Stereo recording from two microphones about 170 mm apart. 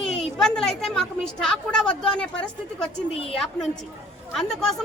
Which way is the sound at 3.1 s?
35° left (ahead or behind).